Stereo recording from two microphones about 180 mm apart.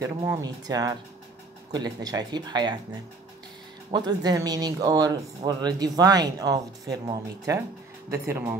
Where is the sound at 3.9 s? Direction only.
20° right (ahead or behind).